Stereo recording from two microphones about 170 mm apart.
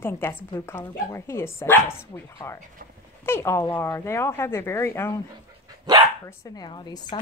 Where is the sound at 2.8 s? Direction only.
60° right (ahead or behind).